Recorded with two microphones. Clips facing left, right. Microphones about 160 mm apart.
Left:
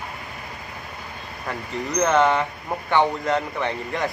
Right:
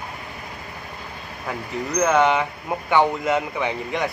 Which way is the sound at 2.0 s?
Centre (ahead or behind).